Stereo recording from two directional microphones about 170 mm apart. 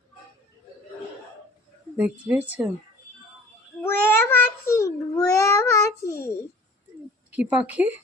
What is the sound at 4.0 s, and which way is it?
A child's voice, 10° left (ahead or behind).